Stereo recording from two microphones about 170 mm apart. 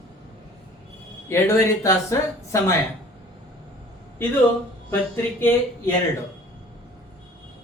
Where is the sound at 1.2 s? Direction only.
15° left (ahead or behind).